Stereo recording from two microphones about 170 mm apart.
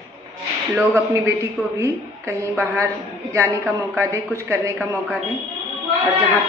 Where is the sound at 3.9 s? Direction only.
15° right (ahead or behind).